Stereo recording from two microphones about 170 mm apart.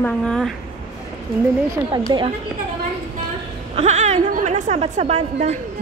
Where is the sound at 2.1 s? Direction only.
25° right (ahead or behind).